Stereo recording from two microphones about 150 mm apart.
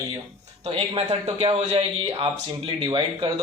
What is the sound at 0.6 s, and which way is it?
Speech, 40° right (ahead or behind).